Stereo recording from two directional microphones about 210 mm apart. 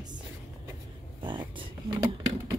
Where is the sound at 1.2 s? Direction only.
20° right (ahead or behind).